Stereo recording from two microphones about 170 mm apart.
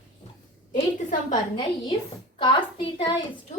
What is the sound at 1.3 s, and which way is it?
A woman's voice, 30° left (ahead or behind).